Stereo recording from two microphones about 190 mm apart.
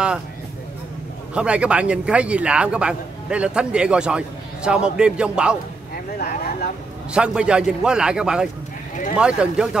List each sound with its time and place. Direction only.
1.3 s a man's voice: 5° right (ahead or behind)
6.1 s speech: 55° left (ahead or behind)
7.2 s a man's voice: 5° right (ahead or behind)